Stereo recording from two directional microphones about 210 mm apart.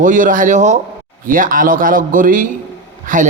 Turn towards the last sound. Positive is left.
turn(degrees=-40)  # may be behind; listen again after turning